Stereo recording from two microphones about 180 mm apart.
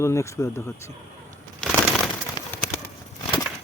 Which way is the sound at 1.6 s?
5° left (ahead or behind).